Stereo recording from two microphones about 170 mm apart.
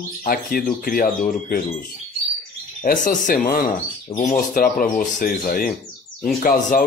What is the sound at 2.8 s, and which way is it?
Speech, 50° left (ahead or behind).